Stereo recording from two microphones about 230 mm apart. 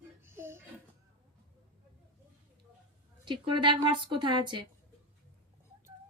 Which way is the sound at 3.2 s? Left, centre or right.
Centre.